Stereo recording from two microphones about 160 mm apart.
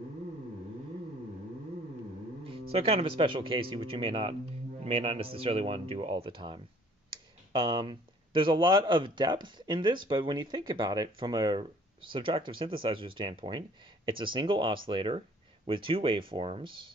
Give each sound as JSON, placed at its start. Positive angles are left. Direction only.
{"t": 2.7, "sound": "speech", "side_deg": -40}